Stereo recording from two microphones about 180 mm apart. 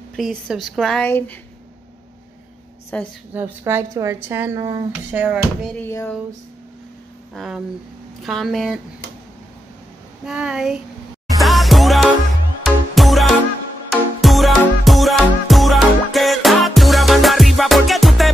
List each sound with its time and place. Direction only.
0.1 s a woman's voice: centre (ahead or behind)
2.9 s speech: 5° left (ahead or behind)
3.3 s speech: 10° right (ahead or behind)
5.1 s speech: 10° right (ahead or behind)
5.8 s speech: 10° left (ahead or behind)
7.3 s a woman's voice: 5° right (ahead or behind)
10.2 s a woman's voice: 5° right (ahead or behind)
11.3 s music: centre (ahead or behind)